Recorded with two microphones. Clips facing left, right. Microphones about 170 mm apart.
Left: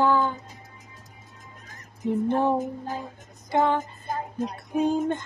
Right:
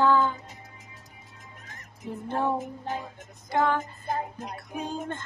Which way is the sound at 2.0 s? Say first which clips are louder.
Left 6 dB; 20° left (ahead or behind).